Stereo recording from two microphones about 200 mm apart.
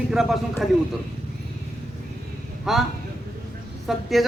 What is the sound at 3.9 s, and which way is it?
Speech, centre (ahead or behind).